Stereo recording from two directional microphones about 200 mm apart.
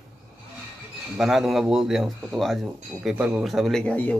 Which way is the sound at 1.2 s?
Centre (ahead or behind).